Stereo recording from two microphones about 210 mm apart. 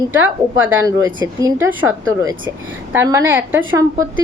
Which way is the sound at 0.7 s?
10° right (ahead or behind).